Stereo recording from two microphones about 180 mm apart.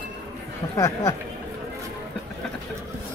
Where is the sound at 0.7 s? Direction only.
15° left (ahead or behind).